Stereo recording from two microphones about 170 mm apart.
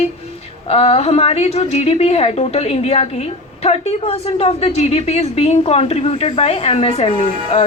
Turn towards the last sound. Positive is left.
turn(degrees=35)  # may be behind; listen again after turning